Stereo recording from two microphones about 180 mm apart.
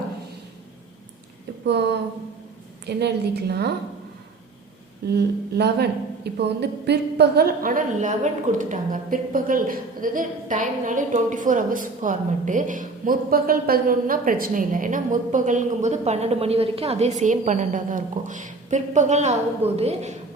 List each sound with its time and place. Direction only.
2.8 s a woman's voice: 65° right (ahead or behind)
5.1 s a woman's voice: 65° right (ahead or behind); by 20.1 s 35° right (ahead or behind)